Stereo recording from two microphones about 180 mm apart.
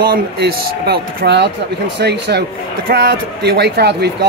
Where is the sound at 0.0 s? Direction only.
55° right (ahead or behind).